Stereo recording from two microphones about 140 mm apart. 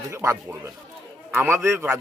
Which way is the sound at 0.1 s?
20° right (ahead or behind).